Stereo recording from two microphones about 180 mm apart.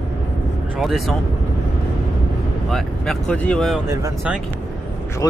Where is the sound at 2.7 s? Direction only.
5° left (ahead or behind).